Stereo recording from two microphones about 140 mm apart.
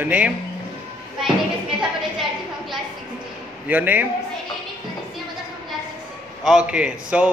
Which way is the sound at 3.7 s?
10° right (ahead or behind).